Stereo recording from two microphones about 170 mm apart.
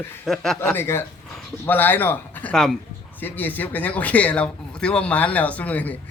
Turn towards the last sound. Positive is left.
turn(degrees=10)  # may be behind; listen again after turning